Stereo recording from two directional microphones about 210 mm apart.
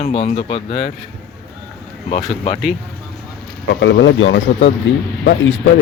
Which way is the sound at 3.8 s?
60° left (ahead or behind).